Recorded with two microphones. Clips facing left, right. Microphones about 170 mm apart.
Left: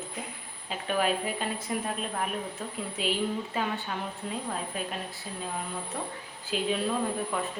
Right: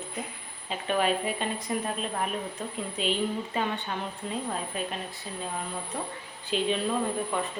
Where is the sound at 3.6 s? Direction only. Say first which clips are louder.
Right 3 dB; centre (ahead or behind).